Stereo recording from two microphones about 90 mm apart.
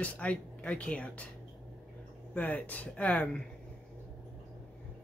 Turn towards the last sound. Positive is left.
turn(degrees=15)  # may be behind; listen again after turning